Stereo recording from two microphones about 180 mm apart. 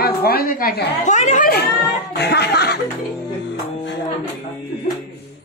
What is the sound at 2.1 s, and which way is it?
Music, 65° left (ahead or behind).